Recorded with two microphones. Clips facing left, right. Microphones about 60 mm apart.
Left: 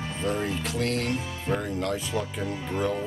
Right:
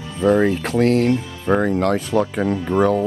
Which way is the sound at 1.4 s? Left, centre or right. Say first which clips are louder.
Right 11 dB; right.